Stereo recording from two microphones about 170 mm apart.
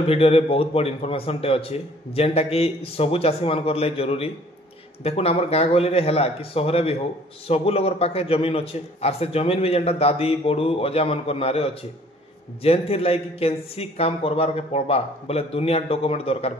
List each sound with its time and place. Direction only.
0.0 s speech: 35° left (ahead or behind)